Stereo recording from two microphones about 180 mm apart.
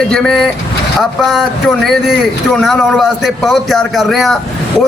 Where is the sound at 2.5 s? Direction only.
Centre (ahead or behind).